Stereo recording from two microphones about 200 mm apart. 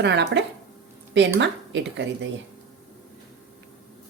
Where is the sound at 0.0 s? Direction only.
60° right (ahead or behind).